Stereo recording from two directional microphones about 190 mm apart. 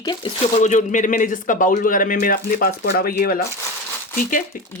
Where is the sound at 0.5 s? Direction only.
40° left (ahead or behind).